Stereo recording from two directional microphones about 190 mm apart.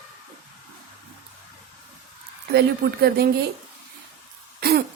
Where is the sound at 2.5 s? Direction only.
55° right (ahead or behind).